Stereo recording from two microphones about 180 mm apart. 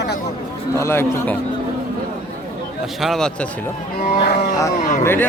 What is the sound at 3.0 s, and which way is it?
Speech, centre (ahead or behind).